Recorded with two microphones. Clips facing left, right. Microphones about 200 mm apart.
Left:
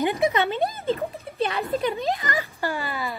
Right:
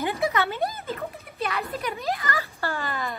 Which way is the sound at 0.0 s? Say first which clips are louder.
Left 3 dB; 15° left (ahead or behind).